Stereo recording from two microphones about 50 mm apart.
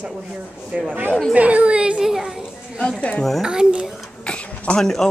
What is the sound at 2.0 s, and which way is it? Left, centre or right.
Speech, centre.